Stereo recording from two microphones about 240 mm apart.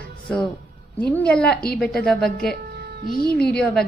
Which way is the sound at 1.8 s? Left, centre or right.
Centre.